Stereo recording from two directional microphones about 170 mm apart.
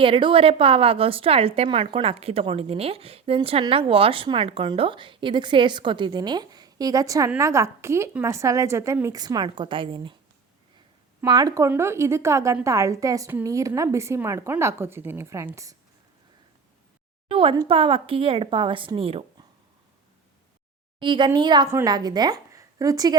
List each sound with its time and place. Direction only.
0.0 s a woman's voice: 30° right (ahead or behind)
11.2 s a woman's voice: 20° right (ahead or behind)
17.2 s a woman's voice: 30° right (ahead or behind)
21.0 s a woman's voice: 30° right (ahead or behind)